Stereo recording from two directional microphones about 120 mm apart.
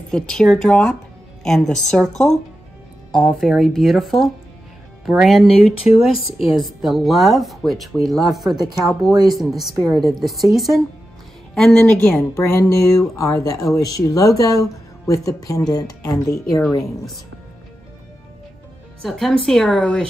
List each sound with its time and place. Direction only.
0.1 s speech: 5° left (ahead or behind)
12.4 s speech: 25° left (ahead or behind)
19.0 s speech: centre (ahead or behind)